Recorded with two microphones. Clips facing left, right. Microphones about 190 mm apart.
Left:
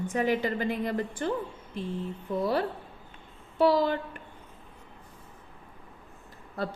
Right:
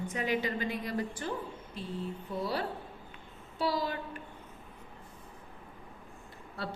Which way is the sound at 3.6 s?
55° left (ahead or behind).